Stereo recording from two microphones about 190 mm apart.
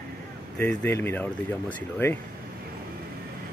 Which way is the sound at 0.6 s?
10° left (ahead or behind).